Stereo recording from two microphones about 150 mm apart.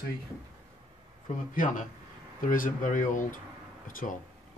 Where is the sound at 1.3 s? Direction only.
60° left (ahead or behind).